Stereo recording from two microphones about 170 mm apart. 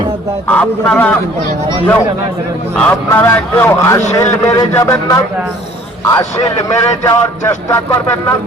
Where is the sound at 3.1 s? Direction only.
15° left (ahead or behind).